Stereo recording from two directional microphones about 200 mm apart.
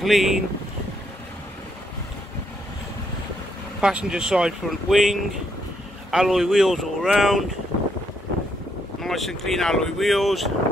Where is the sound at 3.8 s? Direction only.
5° right (ahead or behind).